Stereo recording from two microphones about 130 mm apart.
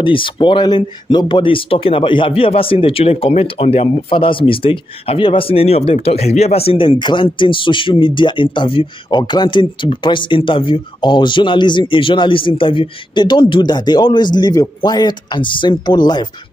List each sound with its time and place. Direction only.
0.0 s speech: 40° left (ahead or behind)